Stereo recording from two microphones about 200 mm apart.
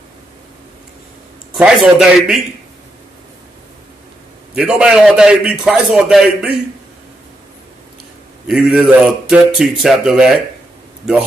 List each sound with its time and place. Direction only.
1.5 s a man's voice: centre (ahead or behind)
4.6 s a man's voice: 5° right (ahead or behind)
8.5 s a man's voice: centre (ahead or behind)